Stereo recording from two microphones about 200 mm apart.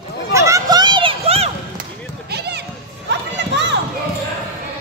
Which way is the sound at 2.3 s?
55° right (ahead or behind).